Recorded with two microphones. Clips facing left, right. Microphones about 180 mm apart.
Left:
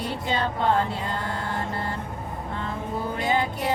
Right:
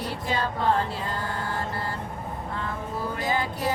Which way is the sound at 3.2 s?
25° left (ahead or behind).